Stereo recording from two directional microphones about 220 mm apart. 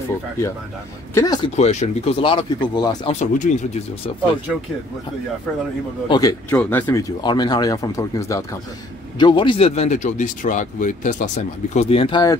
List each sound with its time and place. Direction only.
1.1 s speech: 20° left (ahead or behind)
3.2 s speech: 30° left (ahead or behind)
6.0 s speech: 15° left (ahead or behind)